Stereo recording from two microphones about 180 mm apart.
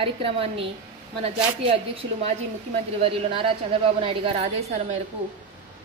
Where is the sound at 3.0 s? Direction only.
30° right (ahead or behind).